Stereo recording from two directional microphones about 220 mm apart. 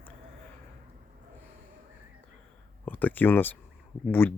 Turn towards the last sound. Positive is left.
turn(degrees=10)  # may be behind; listen again after turning